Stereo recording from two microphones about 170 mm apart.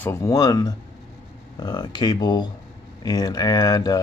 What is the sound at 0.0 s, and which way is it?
Speech, 20° left (ahead or behind).